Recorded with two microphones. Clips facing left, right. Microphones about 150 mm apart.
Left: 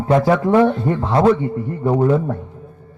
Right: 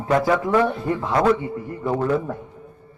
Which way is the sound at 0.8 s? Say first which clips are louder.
Left 4 dB; 35° left (ahead or behind).